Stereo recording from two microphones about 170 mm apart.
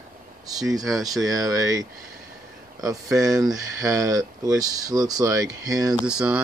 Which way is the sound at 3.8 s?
20° right (ahead or behind).